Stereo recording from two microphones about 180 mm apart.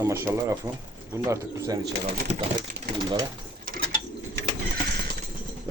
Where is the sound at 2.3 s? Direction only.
35° right (ahead or behind).